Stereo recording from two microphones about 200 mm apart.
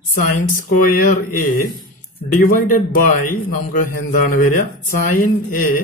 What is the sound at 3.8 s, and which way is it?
Speech, 45° left (ahead or behind).